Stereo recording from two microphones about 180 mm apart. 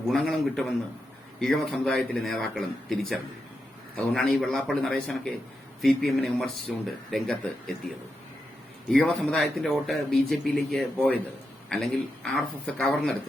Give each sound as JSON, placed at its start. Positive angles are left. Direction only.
{"t": 0.1, "sound": "speech", "side_deg": 0}
{"t": 8.9, "sound": "speech", "side_deg": 5}